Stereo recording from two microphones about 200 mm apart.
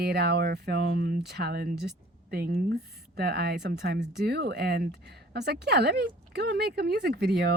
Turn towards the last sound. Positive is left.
turn(degrees=-50)  # may be behind; listen again after turning